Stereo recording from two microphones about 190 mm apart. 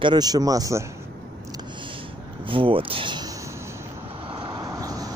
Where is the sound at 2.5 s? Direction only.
25° right (ahead or behind).